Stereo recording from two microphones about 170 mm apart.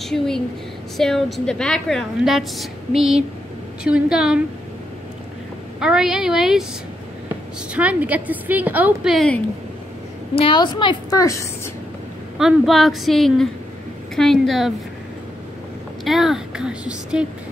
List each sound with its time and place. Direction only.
0.0 s a woman's voice: 5° left (ahead or behind)
5.8 s a woman's voice: 5° right (ahead or behind)
7.7 s a woman's voice: 10° right (ahead or behind)
10.3 s a woman's voice: 30° left (ahead or behind)
12.4 s a woman's voice: centre (ahead or behind)
16.0 s a woman's voice: centre (ahead or behind)